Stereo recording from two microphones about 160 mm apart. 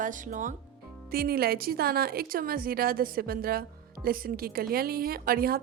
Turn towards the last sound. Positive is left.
turn(degrees=-70)  # may be behind; listen again after turning